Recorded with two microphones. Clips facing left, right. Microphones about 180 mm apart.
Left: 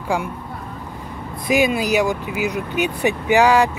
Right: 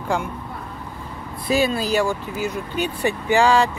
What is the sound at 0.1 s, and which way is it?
Speech, 10° left (ahead or behind).